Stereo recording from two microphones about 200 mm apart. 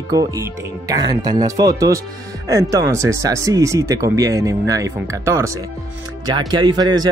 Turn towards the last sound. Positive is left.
turn(degrees=-20)  # may be behind; listen again after turning